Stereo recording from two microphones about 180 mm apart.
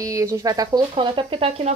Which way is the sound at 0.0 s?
20° right (ahead or behind).